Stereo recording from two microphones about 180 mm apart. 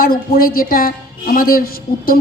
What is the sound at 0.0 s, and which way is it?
A woman's voice, 55° left (ahead or behind).